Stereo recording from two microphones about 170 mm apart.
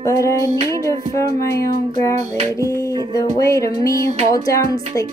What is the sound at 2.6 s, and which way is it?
Music, 20° left (ahead or behind).